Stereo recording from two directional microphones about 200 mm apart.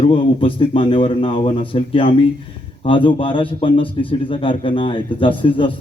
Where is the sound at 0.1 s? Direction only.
25° left (ahead or behind).